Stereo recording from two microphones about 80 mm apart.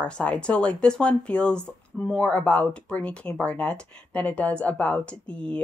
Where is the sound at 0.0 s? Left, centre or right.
Centre.